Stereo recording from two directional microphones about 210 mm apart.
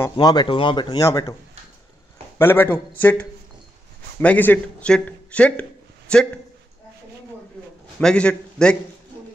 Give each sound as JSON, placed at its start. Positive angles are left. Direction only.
{"t": 0.1, "sound": "speech", "side_deg": 20}
{"t": 2.3, "sound": "a man's voice", "side_deg": 10}
{"t": 8.0, "sound": "a man's voice", "side_deg": 5}